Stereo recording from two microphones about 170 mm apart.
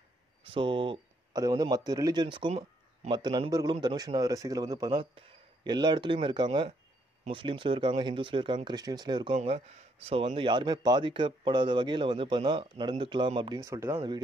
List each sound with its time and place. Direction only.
0.5 s speech: 30° right (ahead or behind)
13.6 s speech: 15° right (ahead or behind)